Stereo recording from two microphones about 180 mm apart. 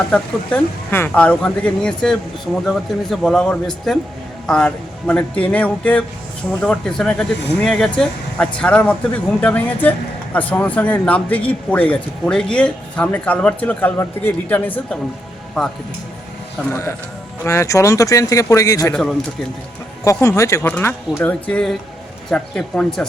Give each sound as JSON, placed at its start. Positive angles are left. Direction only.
{"t": 0.1, "sound": "a man's voice", "side_deg": 10}
{"t": 16.6, "sound": "a man's voice", "side_deg": 15}
{"t": 20.2, "sound": "a man's voice", "side_deg": 15}